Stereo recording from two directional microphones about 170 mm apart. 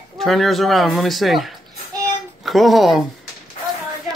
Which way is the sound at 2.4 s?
Centre (ahead or behind).